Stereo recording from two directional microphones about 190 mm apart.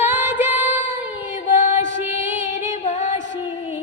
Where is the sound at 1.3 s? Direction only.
40° left (ahead or behind).